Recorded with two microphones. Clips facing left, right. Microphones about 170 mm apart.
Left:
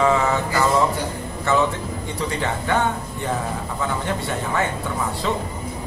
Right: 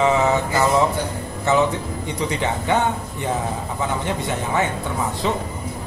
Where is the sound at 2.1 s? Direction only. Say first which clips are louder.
Right 2 dB; 20° right (ahead or behind).